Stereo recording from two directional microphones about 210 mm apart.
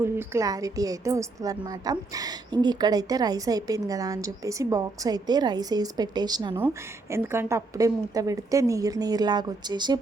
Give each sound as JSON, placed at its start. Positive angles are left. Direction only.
{"t": 0.0, "sound": "a woman's voice", "side_deg": -15}